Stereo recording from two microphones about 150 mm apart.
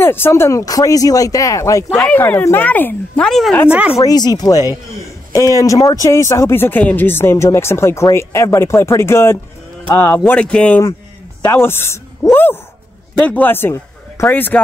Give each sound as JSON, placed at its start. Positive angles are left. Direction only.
{"t": 0.0, "sound": "a man's voice", "side_deg": 15}
{"t": 1.9, "sound": "speech", "side_deg": 0}
{"t": 2.1, "sound": "speech", "side_deg": 15}
{"t": 4.0, "sound": "a man's voice", "side_deg": 25}